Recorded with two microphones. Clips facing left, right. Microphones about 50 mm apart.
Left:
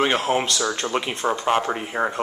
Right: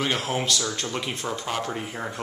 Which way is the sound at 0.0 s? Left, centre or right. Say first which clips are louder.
Left 6 dB; left.